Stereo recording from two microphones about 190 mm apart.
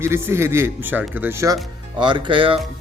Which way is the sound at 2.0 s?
25° right (ahead or behind).